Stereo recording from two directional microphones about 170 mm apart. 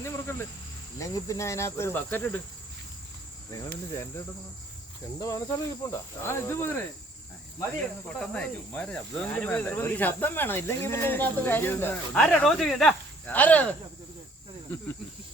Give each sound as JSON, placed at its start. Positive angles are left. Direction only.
{"t": 0.0, "sound": "cricket", "side_deg": 15}
{"t": 3.5, "sound": "cricket", "side_deg": 15}
{"t": 5.2, "sound": "cricket", "side_deg": 20}
{"t": 7.8, "sound": "cricket", "side_deg": 5}